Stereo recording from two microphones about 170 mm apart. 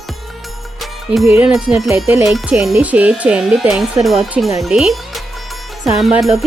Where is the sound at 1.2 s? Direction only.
15° right (ahead or behind).